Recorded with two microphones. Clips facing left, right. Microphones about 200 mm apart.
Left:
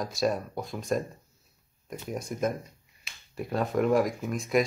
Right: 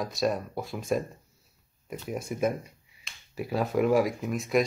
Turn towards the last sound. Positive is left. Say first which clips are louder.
# even
turn(degrees=0)  # may be behind; listen again after turning